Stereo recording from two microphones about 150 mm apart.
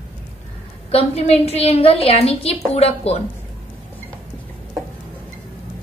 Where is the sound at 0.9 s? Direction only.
40° left (ahead or behind).